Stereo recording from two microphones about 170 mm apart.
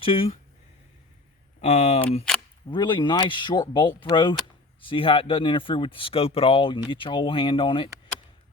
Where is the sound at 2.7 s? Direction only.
25° left (ahead or behind).